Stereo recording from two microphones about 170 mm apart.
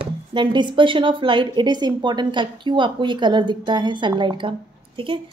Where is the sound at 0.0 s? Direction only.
30° right (ahead or behind).